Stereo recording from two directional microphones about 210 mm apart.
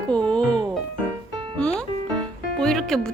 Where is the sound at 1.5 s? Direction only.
5° left (ahead or behind).